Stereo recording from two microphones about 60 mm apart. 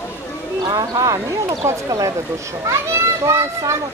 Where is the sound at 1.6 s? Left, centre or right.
Right.